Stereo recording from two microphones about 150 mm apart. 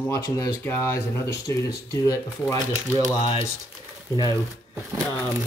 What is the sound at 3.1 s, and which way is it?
Speech, 35° left (ahead or behind).